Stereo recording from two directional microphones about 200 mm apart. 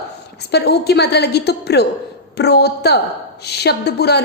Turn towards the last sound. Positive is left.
turn(degrees=55)  # may be behind; listen again after turning